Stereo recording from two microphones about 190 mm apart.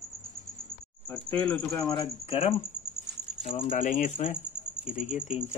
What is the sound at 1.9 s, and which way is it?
Speech, 30° left (ahead or behind).